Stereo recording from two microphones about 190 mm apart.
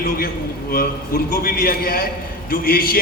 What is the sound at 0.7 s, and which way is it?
A man's voice, 50° left (ahead or behind).